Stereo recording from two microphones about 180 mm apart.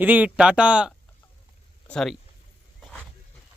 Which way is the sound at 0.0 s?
10° right (ahead or behind).